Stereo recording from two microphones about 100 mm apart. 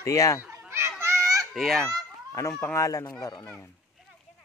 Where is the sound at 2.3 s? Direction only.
30° left (ahead or behind).